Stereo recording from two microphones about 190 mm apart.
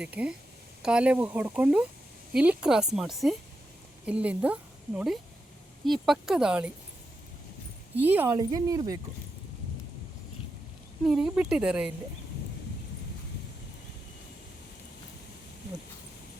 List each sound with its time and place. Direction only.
0.0 s speech: 5° right (ahead or behind)
7.9 s speech: 10° right (ahead or behind)
8.4 s speech: 20° right (ahead or behind)
11.0 s speech: 5° right (ahead or behind)